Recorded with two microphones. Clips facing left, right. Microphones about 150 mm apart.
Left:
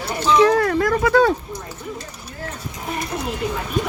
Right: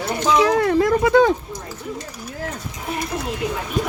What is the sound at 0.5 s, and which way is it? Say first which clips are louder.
Speech: right 1 dB; 20° right (ahead or behind).